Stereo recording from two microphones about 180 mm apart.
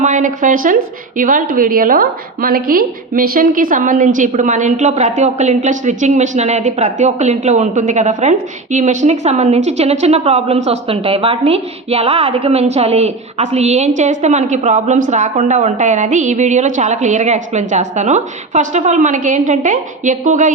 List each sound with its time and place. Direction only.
0.0 s a woman's voice: 45° right (ahead or behind)